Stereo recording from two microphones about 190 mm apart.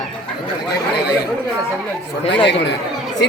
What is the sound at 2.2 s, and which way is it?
Speech, 65° left (ahead or behind).